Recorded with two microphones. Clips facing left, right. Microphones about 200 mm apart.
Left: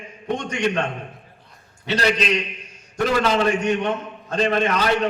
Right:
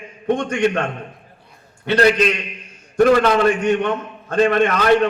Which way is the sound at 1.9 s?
55° right (ahead or behind).